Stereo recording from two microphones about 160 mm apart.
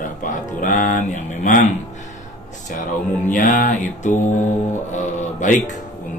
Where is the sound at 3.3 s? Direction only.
55° left (ahead or behind).